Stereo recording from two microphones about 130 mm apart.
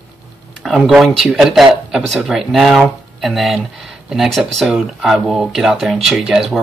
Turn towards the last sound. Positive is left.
turn(degrees=-5)  # may be behind; listen again after turning